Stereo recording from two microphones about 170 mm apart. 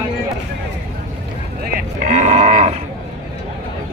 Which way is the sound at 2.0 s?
45° right (ahead or behind).